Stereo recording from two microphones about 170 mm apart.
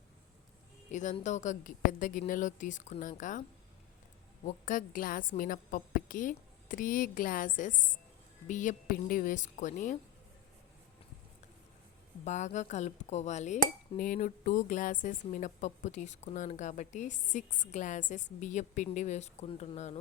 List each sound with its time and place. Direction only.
0.9 s speech: 45° left (ahead or behind)
4.4 s speech: 50° left (ahead or behind)
12.2 s speech: 45° left (ahead or behind)